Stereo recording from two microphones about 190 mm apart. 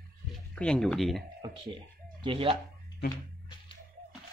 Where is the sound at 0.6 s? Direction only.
5° left (ahead or behind).